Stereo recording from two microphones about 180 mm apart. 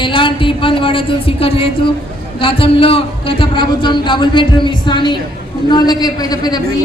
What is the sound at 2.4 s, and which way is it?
Speech, 30° left (ahead or behind).